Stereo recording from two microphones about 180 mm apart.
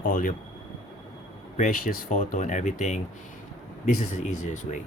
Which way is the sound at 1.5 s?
45° left (ahead or behind).